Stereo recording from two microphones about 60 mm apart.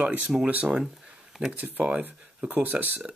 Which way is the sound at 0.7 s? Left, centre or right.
Centre.